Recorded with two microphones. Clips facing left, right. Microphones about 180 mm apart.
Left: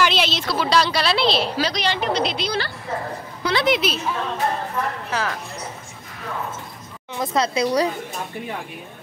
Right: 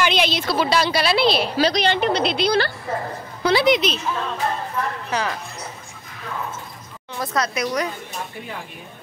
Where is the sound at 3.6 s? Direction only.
5° left (ahead or behind).